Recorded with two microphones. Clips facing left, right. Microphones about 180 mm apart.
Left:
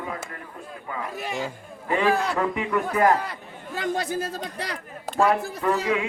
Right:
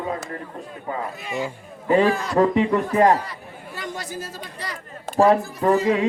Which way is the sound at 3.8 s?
60° left (ahead or behind).